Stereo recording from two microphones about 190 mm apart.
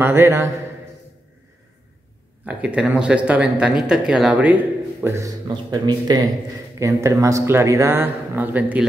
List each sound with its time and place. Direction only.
0.0 s speech: 10° right (ahead or behind)
2.4 s speech: 5° right (ahead or behind)